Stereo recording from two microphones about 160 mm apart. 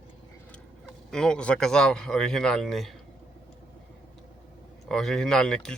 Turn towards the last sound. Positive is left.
turn(degrees=5)  # may be behind; listen again after turning